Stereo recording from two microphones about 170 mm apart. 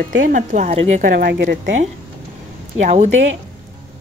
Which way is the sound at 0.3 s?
50° right (ahead or behind).